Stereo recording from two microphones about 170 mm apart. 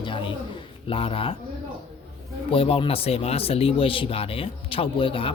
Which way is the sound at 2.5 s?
35° left (ahead or behind).